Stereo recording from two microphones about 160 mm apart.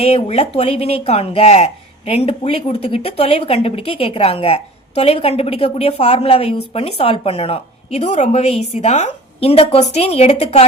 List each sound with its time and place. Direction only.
0.0 s speech: 40° left (ahead or behind)